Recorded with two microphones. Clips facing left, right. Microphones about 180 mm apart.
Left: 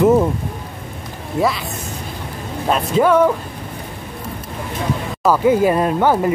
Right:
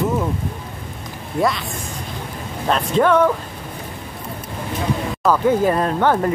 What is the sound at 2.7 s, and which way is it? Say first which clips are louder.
Speech: left 1 dB; 10° left (ahead or behind).